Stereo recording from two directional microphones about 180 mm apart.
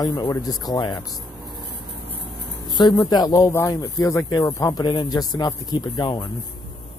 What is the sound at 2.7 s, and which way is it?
Speech, 25° left (ahead or behind).